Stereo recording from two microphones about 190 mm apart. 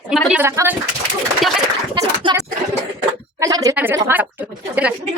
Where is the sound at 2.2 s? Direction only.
25° right (ahead or behind).